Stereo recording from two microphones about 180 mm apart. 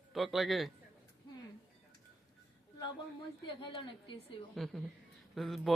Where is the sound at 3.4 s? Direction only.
25° left (ahead or behind).